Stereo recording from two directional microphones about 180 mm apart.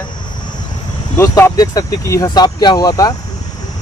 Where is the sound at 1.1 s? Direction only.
15° left (ahead or behind).